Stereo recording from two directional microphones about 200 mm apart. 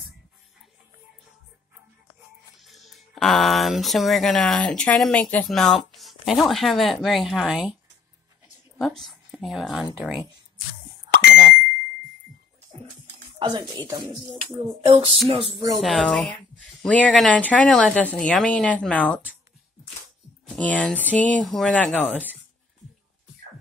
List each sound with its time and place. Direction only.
2.6 s speech: centre (ahead or behind)
8.7 s speech: centre (ahead or behind)
11.3 s a sound: centre (ahead or behind)
13.4 s speech: 25° right (ahead or behind)
15.8 s speech: centre (ahead or behind)
20.4 s speech: 5° left (ahead or behind)